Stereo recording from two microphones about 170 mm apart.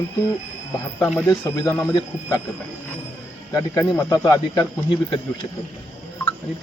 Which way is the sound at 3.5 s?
20° left (ahead or behind).